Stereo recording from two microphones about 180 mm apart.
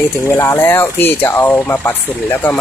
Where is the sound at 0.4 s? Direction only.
15° left (ahead or behind).